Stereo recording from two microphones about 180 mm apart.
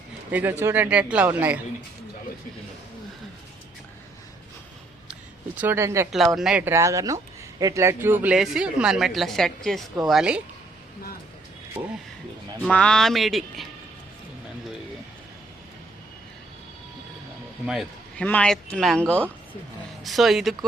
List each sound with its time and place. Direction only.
0.3 s speech: 10° right (ahead or behind)
5.5 s speech: 10° right (ahead or behind)
6.3 s speech: 5° right (ahead or behind)
11.8 s speech: 30° right (ahead or behind)
12.6 s speech: 5° left (ahead or behind)
17.7 s a man's voice: centre (ahead or behind)